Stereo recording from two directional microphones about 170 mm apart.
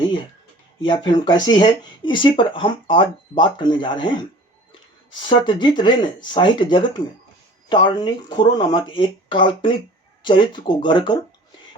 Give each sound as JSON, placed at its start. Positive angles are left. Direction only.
{"t": 0.9, "sound": "speech", "side_deg": 25}
{"t": 5.3, "sound": "speech", "side_deg": 25}